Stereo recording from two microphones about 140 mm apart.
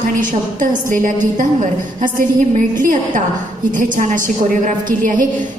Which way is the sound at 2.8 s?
70° right (ahead or behind).